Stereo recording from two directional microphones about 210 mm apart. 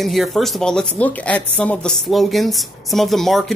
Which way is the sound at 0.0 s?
Centre (ahead or behind).